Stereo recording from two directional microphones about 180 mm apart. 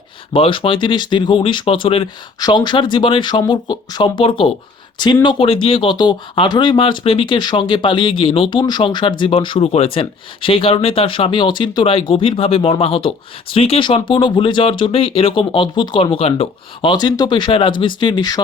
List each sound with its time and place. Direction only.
0.3 s speech: 30° left (ahead or behind)